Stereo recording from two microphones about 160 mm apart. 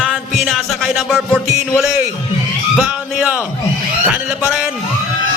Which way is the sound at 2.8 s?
5° right (ahead or behind).